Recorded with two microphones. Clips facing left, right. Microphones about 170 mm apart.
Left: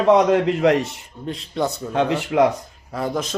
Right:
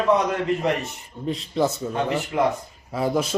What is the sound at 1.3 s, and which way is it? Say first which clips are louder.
Speech: right 1 dB; centre (ahead or behind).